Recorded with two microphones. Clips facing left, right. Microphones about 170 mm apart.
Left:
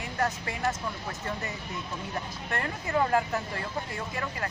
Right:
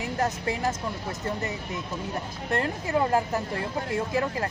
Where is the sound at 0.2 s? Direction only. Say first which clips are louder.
Right 2 dB; 25° right (ahead or behind).